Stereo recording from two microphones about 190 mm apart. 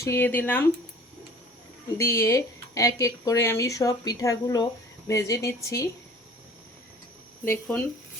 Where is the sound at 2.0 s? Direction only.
15° left (ahead or behind).